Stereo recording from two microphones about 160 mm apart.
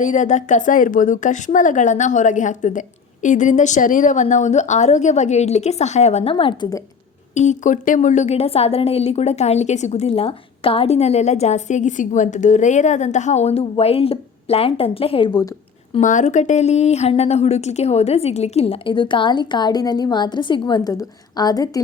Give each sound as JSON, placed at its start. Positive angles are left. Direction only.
{"t": 0.0, "sound": "a woman's voice", "side_deg": 50}
{"t": 6.3, "sound": "a woman's voice", "side_deg": 30}
{"t": 7.3, "sound": "a woman's voice", "side_deg": 50}
{"t": 16.0, "sound": "speech", "side_deg": 50}